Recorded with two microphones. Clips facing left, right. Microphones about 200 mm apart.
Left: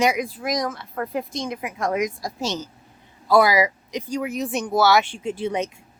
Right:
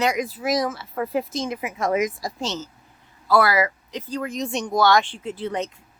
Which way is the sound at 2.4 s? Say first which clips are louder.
Left 3 dB; 10° left (ahead or behind).